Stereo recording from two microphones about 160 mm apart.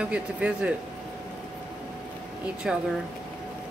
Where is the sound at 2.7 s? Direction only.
5° right (ahead or behind).